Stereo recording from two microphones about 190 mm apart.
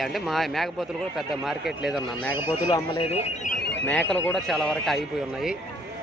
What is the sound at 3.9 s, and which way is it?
Speech, 5° left (ahead or behind).